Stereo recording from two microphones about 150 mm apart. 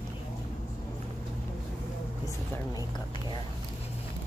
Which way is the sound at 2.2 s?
25° left (ahead or behind).